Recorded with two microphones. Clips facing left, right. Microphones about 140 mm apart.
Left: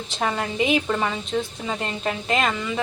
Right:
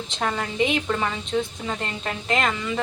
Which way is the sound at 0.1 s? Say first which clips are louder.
Left 2 dB; 5° left (ahead or behind).